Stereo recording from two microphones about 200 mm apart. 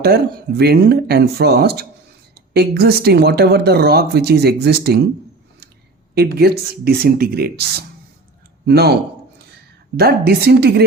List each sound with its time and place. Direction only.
0.0 s a woman's voice: 50° right (ahead or behind)
6.1 s a woman's voice: 50° right (ahead or behind)
10.0 s a woman's voice: 50° right (ahead or behind)